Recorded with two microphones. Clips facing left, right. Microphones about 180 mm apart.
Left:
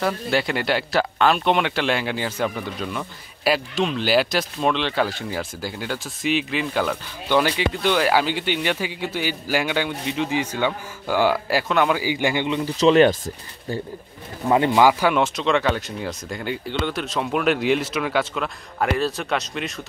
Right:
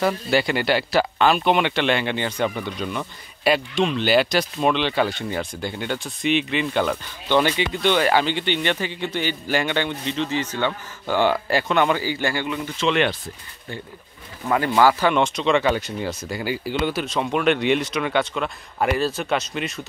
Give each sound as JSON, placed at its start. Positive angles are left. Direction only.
{"t": 0.0, "sound": "speech", "side_deg": 0}
{"t": 12.0, "sound": "speech", "side_deg": 15}
{"t": 12.6, "sound": "speech", "side_deg": 35}
{"t": 14.5, "sound": "speech", "side_deg": 20}